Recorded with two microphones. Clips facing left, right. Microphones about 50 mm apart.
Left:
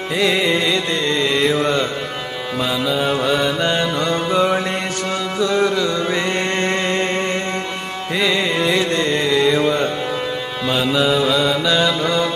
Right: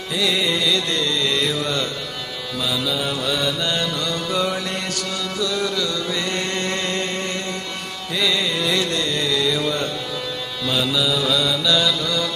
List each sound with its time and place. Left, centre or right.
0.2 s carnatic music: left
2.9 s mantra: left
8.2 s carnatic music: left
10.7 s mantra: left